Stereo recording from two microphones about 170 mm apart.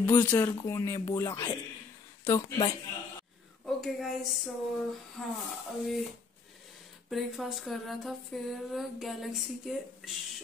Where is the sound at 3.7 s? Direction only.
Centre (ahead or behind).